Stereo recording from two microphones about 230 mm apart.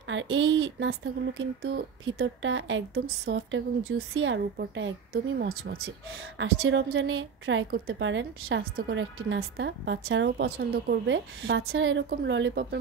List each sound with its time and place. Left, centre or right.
0.1 s a woman's voice: right
6.3 s a woman's voice: right